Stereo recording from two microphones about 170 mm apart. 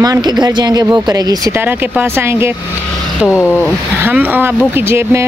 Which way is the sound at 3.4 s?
10° left (ahead or behind).